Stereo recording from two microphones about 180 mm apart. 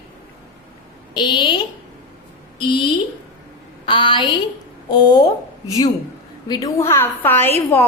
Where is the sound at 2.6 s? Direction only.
25° left (ahead or behind).